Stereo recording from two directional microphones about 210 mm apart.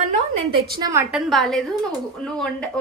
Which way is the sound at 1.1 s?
Centre (ahead or behind).